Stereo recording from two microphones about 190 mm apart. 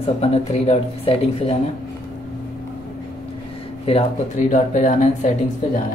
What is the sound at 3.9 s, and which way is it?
Speech, 35° left (ahead or behind).